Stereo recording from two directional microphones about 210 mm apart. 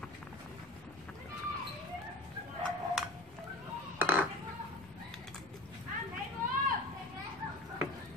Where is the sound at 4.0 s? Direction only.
10° right (ahead or behind).